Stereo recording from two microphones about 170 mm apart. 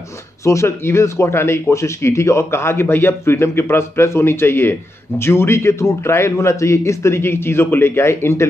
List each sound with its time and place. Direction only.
0.4 s speech: 15° left (ahead or behind)